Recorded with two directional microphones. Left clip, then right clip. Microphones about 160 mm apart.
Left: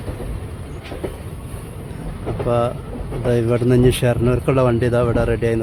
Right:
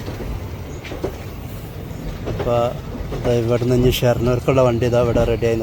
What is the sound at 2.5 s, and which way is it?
Speech, 25° left (ahead or behind).